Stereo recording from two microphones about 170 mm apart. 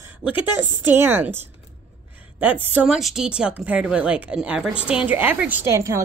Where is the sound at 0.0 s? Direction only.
10° right (ahead or behind).